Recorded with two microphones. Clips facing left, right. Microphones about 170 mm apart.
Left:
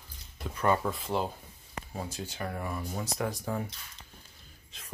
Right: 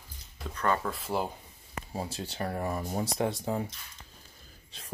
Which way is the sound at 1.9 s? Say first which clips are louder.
Right 2 dB; 30° right (ahead or behind).